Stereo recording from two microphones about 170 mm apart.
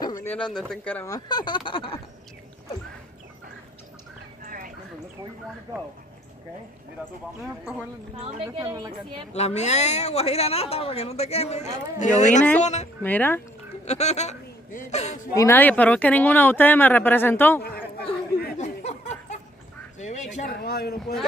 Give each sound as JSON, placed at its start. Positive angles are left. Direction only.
{"t": 0.0, "sound": "speech", "side_deg": 15}
{"t": 1.1, "sound": "speech", "side_deg": 25}
{"t": 4.5, "sound": "a sound", "side_deg": -55}
{"t": 8.4, "sound": "a woman's voice", "side_deg": -30}
{"t": 9.3, "sound": "speech", "side_deg": 40}
{"t": 13.0, "sound": "speech", "side_deg": 10}
{"t": 13.8, "sound": "speech", "side_deg": 40}
{"t": 15.3, "sound": "speech", "side_deg": 15}
{"t": 18.6, "sound": "a sound", "side_deg": 45}
{"t": 20.6, "sound": "a sound", "side_deg": 65}